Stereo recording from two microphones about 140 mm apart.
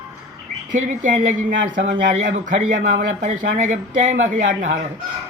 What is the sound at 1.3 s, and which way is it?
A man's voice, 70° right (ahead or behind).